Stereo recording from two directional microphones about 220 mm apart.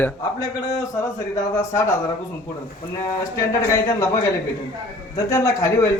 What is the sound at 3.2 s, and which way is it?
Speech, 15° left (ahead or behind).